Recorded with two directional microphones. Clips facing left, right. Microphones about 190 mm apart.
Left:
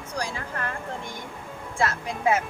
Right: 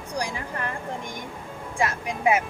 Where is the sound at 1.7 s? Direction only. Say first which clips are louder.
Even; 15° right (ahead or behind).